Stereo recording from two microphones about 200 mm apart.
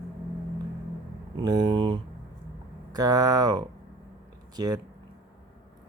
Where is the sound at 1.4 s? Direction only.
25° right (ahead or behind).